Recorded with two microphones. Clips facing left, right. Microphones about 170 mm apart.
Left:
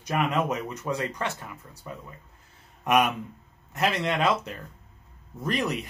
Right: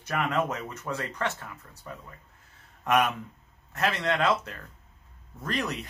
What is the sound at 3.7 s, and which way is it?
Speech, 15° left (ahead or behind).